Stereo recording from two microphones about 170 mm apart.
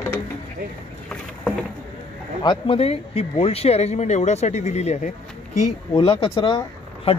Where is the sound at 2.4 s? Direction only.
30° left (ahead or behind).